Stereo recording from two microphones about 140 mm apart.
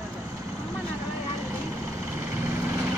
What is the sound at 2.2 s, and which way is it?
Vehicle, 15° right (ahead or behind).